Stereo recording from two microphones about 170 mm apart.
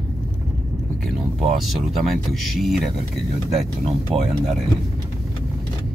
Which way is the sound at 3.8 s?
35° right (ahead or behind).